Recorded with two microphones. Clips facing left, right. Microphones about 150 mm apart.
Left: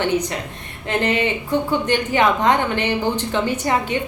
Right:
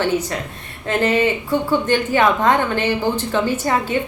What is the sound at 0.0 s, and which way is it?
A woman's voice, 20° left (ahead or behind).